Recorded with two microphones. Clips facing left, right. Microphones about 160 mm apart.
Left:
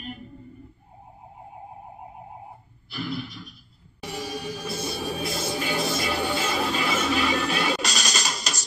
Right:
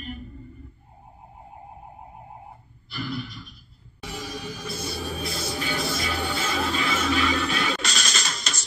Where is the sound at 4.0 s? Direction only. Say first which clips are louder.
Left 2 dB; 5° left (ahead or behind).